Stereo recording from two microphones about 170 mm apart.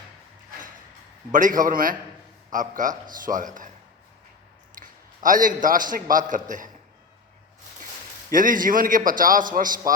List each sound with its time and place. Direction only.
1.3 s a man's voice: 50° right (ahead or behind)
4.8 s a man's voice: 50° right (ahead or behind)
8.3 s a man's voice: 55° right (ahead or behind)